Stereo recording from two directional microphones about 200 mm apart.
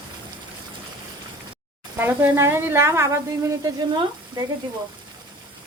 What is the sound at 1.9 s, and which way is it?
Speech, 10° right (ahead or behind).